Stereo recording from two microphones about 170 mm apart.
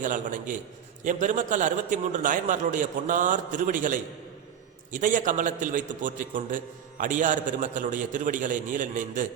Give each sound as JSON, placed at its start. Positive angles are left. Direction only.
{"t": 0.0, "sound": "a man's voice", "side_deg": -50}